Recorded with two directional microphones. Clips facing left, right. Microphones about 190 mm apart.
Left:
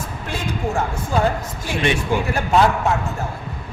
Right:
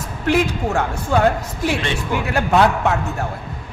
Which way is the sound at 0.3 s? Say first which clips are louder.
Right 8 dB; 70° right (ahead or behind).